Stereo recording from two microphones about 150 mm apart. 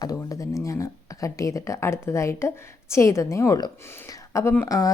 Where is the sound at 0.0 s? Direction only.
25° left (ahead or behind).